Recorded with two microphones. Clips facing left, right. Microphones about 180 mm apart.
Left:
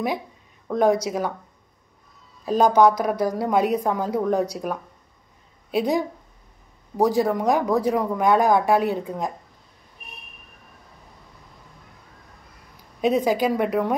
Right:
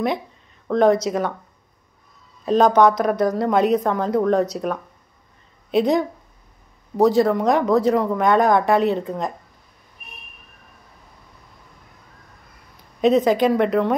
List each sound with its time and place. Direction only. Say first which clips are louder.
0.7 s speech: right 3 dB; 10° left (ahead or behind)
2.4 s speech: right 2 dB; 10° left (ahead or behind)
13.0 s speech: right 4 dB; 10° left (ahead or behind)